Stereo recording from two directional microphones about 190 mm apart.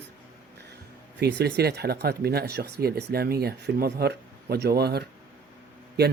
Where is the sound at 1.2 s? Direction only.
60° right (ahead or behind).